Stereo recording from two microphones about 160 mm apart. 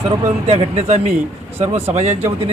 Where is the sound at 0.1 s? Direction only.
40° right (ahead or behind).